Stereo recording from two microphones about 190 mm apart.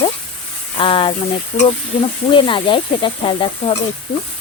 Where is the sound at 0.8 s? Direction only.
25° left (ahead or behind).